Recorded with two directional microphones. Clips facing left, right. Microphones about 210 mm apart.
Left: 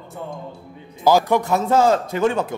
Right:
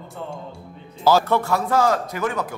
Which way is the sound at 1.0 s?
15° left (ahead or behind).